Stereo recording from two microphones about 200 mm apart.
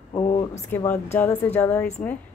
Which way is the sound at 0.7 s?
10° left (ahead or behind).